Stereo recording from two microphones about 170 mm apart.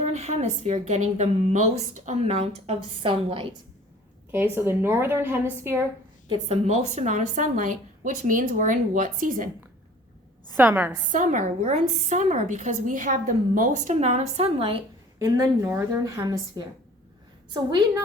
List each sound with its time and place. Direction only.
0.0 s a woman's voice: 40° right (ahead or behind)
4.5 s a woman's voice: 15° right (ahead or behind)
6.2 s a woman's voice: 30° right (ahead or behind); by 9.5 s 50° right (ahead or behind)
10.5 s a woman's voice: 10° right (ahead or behind)
11.1 s a woman's voice: 50° right (ahead or behind)
15.2 s speech: 20° right (ahead or behind)